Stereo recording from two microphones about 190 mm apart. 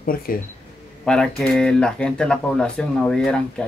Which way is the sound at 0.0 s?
50° left (ahead or behind).